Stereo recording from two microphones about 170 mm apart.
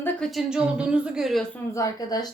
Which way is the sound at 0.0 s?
Centre (ahead or behind).